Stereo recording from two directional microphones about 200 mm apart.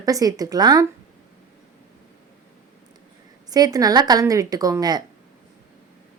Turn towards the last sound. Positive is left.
turn(degrees=-20)  # may be behind; listen again after turning